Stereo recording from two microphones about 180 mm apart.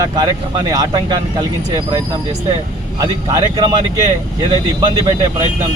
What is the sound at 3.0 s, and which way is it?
Speech, 20° right (ahead or behind).